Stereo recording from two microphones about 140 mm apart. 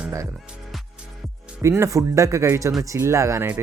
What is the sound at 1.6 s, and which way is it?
Speech, 20° right (ahead or behind).